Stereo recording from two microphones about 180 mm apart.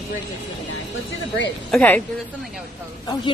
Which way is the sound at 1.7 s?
10° left (ahead or behind).